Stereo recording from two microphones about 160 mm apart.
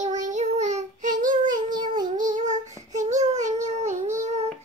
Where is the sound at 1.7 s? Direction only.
25° right (ahead or behind).